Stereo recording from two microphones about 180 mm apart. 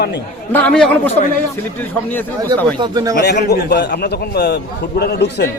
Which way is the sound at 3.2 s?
65° left (ahead or behind).